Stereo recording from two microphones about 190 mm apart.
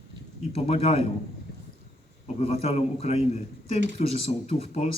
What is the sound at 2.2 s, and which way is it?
A man's voice, 35° left (ahead or behind).